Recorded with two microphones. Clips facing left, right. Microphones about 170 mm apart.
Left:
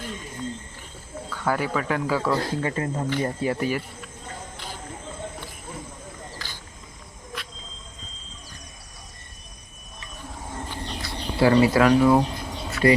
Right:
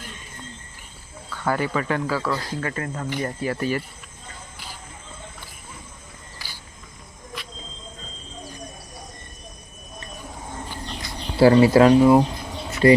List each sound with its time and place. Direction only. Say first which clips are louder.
1.3 s speech: right 1 dB; 5° left (ahead or behind)
2.0 s speech: left 2 dB; 20° left (ahead or behind)
11.3 s speech: right 4 dB; 30° right (ahead or behind)